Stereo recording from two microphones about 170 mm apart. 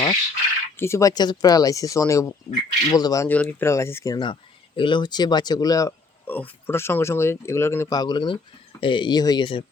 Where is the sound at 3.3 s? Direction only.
10° left (ahead or behind).